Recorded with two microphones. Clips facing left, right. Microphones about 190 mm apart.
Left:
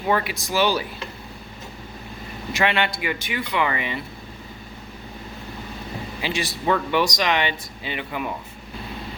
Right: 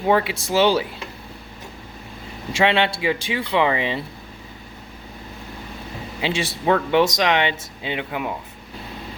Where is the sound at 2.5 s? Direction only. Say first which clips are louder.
Right 4 dB; 25° right (ahead or behind).